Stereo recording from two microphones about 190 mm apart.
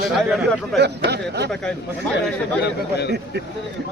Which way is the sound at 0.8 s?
60° right (ahead or behind).